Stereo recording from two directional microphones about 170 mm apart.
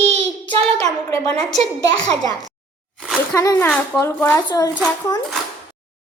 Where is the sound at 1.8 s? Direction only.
90° right.